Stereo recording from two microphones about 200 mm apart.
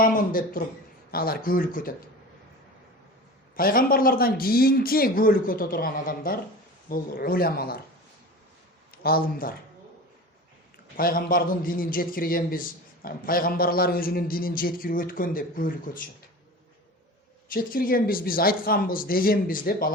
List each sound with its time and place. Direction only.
0.0 s a man's voice: 45° left (ahead or behind)
3.5 s a man's voice: 45° left (ahead or behind)
8.9 s speech: 50° left (ahead or behind)
10.9 s a man's voice: 45° left (ahead or behind)
17.5 s a man's voice: 45° left (ahead or behind)